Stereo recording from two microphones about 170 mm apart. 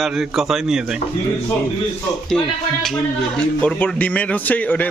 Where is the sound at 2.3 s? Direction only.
5° left (ahead or behind).